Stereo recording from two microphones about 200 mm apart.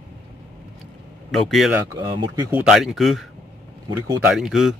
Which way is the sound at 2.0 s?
25° right (ahead or behind).